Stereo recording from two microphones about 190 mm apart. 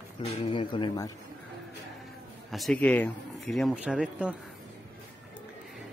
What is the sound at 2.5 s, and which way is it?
Speech, centre (ahead or behind).